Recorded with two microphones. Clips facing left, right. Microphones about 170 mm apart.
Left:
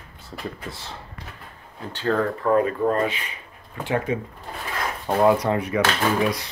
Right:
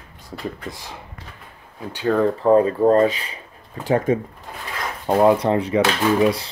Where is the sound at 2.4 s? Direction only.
30° right (ahead or behind).